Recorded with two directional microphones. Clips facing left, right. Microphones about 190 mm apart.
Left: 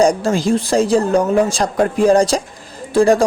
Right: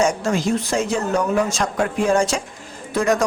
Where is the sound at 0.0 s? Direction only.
35° left (ahead or behind).